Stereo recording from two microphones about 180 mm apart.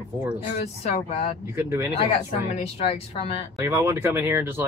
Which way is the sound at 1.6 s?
15° right (ahead or behind).